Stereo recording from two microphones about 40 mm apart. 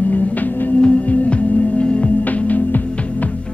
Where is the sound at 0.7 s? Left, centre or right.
Left.